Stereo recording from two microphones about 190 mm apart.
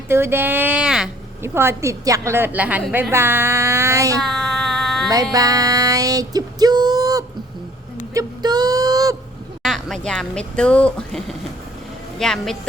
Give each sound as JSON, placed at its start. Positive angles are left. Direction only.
{"t": 0.1, "sound": "a woman's voice", "side_deg": -10}
{"t": 4.2, "sound": "child singing", "side_deg": 0}
{"t": 5.0, "sound": "music", "side_deg": -20}
{"t": 8.1, "sound": "a sound", "side_deg": -20}
{"t": 9.6, "sound": "speech", "side_deg": 0}